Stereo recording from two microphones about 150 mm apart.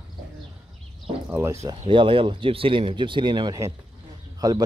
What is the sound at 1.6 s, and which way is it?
Speech, 35° right (ahead or behind).